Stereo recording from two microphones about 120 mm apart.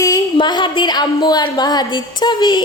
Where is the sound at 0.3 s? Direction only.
40° left (ahead or behind).